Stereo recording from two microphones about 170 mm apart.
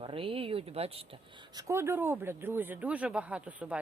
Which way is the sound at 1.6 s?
15° right (ahead or behind).